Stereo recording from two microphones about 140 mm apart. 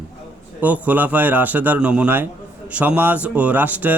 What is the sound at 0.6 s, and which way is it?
Speech, 10° right (ahead or behind).